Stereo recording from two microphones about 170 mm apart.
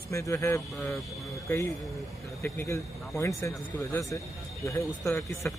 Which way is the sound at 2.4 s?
15° left (ahead or behind).